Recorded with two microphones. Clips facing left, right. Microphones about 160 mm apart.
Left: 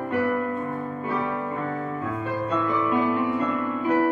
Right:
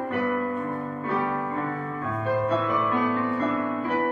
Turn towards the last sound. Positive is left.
turn(degrees=15)  # may be behind; listen again after turning